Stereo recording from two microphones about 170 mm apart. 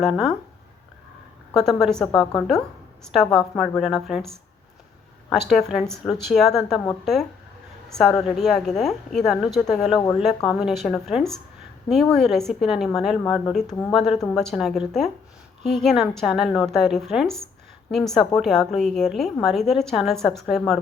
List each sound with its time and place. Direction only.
0.0 s a woman's voice: centre (ahead or behind)
1.5 s a woman's voice: centre (ahead or behind)